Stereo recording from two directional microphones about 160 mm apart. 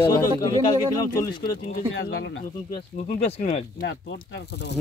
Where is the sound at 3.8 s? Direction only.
90° left.